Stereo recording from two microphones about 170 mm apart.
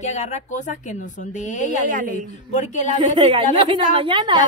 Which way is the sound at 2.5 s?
45° left (ahead or behind).